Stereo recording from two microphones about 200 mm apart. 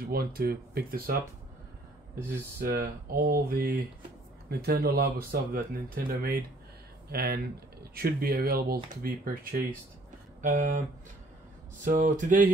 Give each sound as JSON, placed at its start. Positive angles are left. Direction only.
{"t": 0.0, "sound": "speech", "side_deg": -50}
{"t": 2.6, "sound": "speech", "side_deg": -45}
{"t": 11.8, "sound": "speech", "side_deg": -40}